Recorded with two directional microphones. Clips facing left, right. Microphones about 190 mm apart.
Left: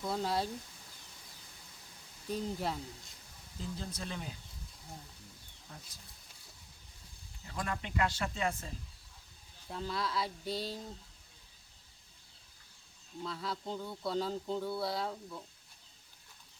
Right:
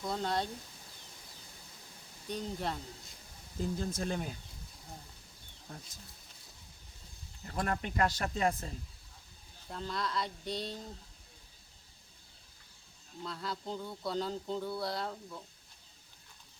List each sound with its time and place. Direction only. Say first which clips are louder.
0.0 s speech: even; 5° left (ahead or behind)
2.3 s speech: left 1 dB; centre (ahead or behind)
3.6 s speech: right 7 dB; 50° right (ahead or behind)
5.6 s speech: right 4 dB; 45° right (ahead or behind)
7.4 s speech: right 4 dB; 50° right (ahead or behind)
9.6 s speech: even; 5° left (ahead or behind)
13.2 s speech: even; centre (ahead or behind)